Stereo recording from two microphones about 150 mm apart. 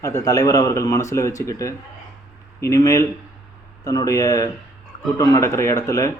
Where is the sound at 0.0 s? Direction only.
20° left (ahead or behind).